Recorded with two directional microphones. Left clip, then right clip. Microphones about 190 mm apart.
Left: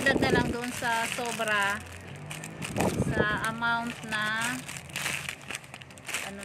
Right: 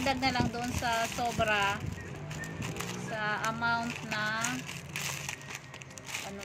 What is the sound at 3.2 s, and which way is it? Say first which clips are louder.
Speech: left 3 dB; 40° left (ahead or behind).